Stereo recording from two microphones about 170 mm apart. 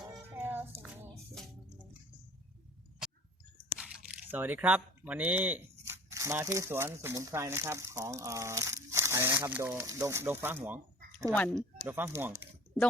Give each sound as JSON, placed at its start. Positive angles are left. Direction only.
{"t": 0.3, "sound": "music", "side_deg": -10}
{"t": 3.6, "sound": "speech", "side_deg": -5}
{"t": 11.3, "sound": "speech", "side_deg": 5}
{"t": 11.9, "sound": "speech", "side_deg": -10}